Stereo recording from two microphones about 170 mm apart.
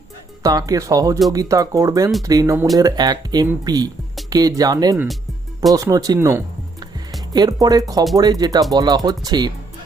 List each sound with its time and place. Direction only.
0.4 s speech: 20° right (ahead or behind)